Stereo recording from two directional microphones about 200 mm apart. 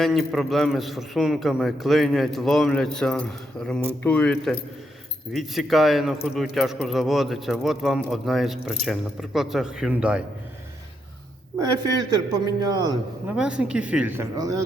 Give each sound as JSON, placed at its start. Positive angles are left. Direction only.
{"t": 0.0, "sound": "a man's voice", "side_deg": 0}
{"t": 11.9, "sound": "a man's voice", "side_deg": -20}
{"t": 13.3, "sound": "a woman's voice", "side_deg": -5}